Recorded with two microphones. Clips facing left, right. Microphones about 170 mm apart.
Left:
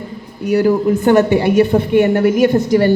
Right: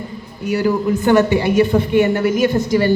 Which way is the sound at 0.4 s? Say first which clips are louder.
Left 4 dB; 50° left (ahead or behind).